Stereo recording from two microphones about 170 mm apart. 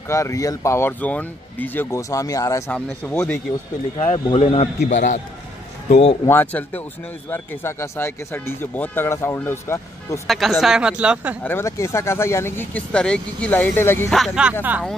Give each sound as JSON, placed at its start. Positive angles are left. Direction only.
{"t": 0.1, "sound": "speech", "side_deg": 20}
{"t": 2.7, "sound": "speech", "side_deg": 10}
{"t": 4.0, "sound": "a man's voice", "side_deg": 40}
{"t": 6.2, "sound": "speech", "side_deg": 10}
{"t": 10.2, "sound": "speech", "side_deg": 0}
{"t": 11.4, "sound": "speech", "side_deg": 15}
{"t": 14.1, "sound": "speech", "side_deg": 0}